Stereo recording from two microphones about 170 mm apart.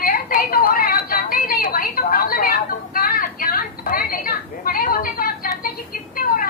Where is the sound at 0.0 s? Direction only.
60° left (ahead or behind).